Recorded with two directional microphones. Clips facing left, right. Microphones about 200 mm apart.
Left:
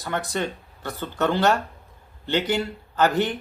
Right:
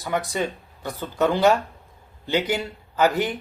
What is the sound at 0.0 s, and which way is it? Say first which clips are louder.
Speech: right 2 dB; 10° right (ahead or behind).